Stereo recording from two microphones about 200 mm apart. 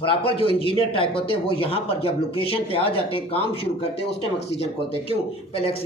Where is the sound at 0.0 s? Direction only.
25° left (ahead or behind).